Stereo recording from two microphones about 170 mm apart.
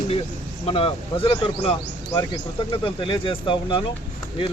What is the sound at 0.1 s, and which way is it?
Speech, 35° left (ahead or behind).